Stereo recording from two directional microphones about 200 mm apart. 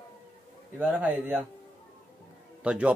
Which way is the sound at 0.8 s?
5° right (ahead or behind).